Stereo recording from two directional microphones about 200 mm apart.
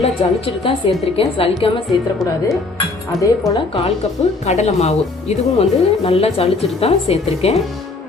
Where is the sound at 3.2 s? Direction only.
20° left (ahead or behind).